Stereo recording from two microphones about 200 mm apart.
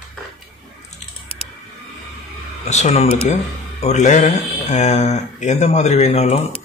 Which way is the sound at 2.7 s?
35° left (ahead or behind).